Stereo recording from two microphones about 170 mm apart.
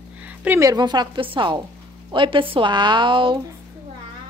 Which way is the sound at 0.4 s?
15° right (ahead or behind).